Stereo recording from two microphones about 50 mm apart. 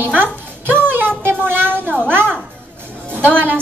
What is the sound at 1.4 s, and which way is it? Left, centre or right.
Speech, right.